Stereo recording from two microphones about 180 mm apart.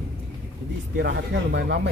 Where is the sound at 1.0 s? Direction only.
85° right.